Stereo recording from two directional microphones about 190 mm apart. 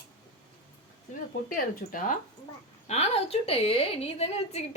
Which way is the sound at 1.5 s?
45° left (ahead or behind).